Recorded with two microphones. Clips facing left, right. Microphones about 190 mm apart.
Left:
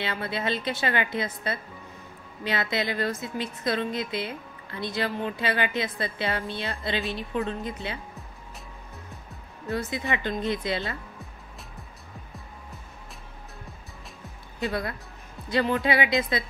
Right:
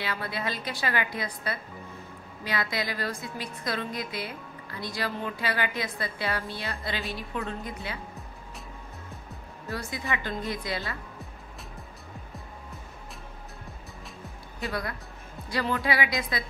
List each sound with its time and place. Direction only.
0.0 s a woman's voice: 25° left (ahead or behind)
9.7 s a woman's voice: 20° left (ahead or behind)
14.7 s a woman's voice: 25° left (ahead or behind)